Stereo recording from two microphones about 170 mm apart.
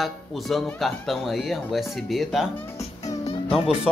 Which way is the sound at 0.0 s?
Centre (ahead or behind).